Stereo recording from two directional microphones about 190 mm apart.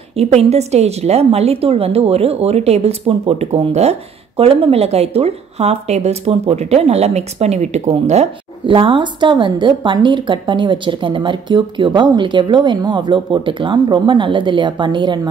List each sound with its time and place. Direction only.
0.1 s a woman's voice: 35° right (ahead or behind)